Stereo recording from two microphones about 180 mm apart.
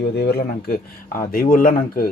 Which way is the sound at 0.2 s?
60° left (ahead or behind).